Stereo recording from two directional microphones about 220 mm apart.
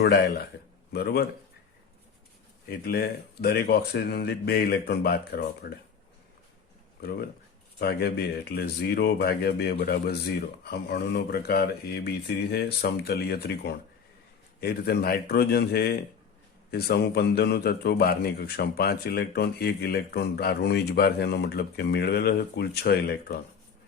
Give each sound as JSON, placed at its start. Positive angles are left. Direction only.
{"t": 0.0, "sound": "a man's voice", "side_deg": 45}
{"t": 2.6, "sound": "a man's voice", "side_deg": 45}
{"t": 7.0, "sound": "a man's voice", "side_deg": 45}